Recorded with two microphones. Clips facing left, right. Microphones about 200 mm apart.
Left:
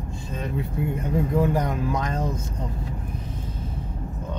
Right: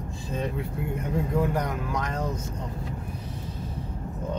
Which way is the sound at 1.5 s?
25° left (ahead or behind).